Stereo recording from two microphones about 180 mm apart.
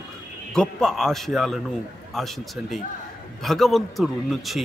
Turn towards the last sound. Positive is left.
turn(degrees=0)  # may be behind; listen again after turning